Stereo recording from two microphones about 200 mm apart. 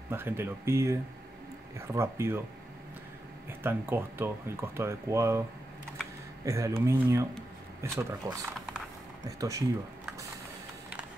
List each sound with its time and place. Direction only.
0.1 s speech: 10° right (ahead or behind)
2.0 s speech: 10° right (ahead or behind)
3.4 s speech: 10° right (ahead or behind)
6.4 s speech: 15° right (ahead or behind)